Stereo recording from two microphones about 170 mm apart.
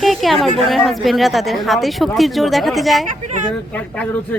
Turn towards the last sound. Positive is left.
turn(degrees=5)  # may be behind; listen again after turning